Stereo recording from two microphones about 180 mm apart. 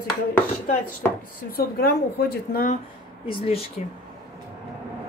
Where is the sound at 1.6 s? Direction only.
60° left (ahead or behind).